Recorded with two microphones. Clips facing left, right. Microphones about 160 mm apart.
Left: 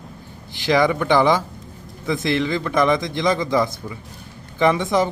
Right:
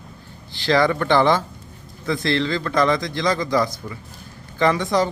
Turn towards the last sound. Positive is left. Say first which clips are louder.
# left 1 dB
turn(degrees=20)  # may be behind; listen again after turning